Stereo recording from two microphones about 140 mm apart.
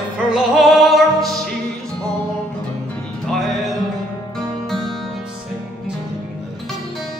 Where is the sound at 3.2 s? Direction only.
Centre (ahead or behind).